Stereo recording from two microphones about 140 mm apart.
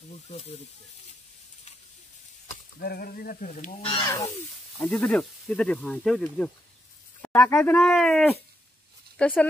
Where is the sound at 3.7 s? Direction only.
40° left (ahead or behind).